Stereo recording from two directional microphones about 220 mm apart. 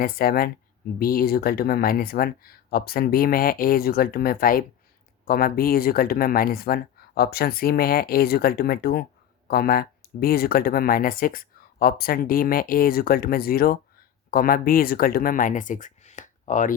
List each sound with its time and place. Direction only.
0.0 s speech: 40° left (ahead or behind)